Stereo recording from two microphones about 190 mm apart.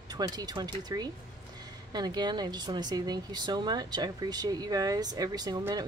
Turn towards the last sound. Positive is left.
turn(degrees=-20)  # may be behind; listen again after turning